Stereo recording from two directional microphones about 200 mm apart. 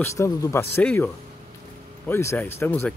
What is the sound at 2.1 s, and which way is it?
Speech, 10° left (ahead or behind).